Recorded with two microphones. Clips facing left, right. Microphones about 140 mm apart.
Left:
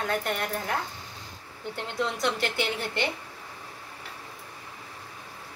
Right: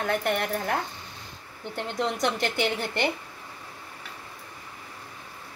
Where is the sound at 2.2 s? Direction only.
50° right (ahead or behind).